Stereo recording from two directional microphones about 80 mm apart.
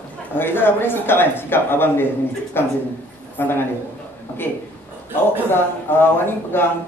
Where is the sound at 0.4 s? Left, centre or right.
Left.